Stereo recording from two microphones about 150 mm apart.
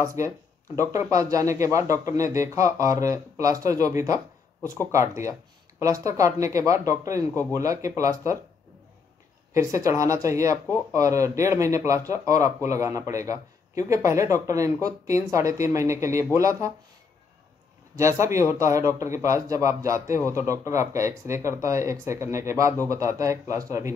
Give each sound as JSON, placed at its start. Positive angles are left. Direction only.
{"t": 0.0, "sound": "a man's voice", "side_deg": -20}
{"t": 9.5, "sound": "a man's voice", "side_deg": -20}
{"t": 17.9, "sound": "a man's voice", "side_deg": -20}